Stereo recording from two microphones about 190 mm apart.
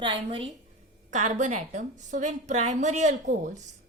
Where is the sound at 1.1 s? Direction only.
40° right (ahead or behind).